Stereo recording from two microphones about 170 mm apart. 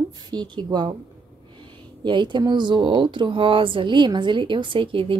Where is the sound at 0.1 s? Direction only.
25° right (ahead or behind).